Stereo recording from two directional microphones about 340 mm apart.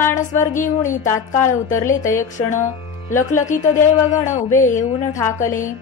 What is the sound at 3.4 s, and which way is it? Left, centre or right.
A woman's voice, left.